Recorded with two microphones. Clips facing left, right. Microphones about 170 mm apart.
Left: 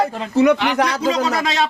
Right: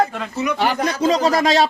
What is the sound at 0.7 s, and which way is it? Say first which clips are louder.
Speech: left 3 dB; 70° left (ahead or behind).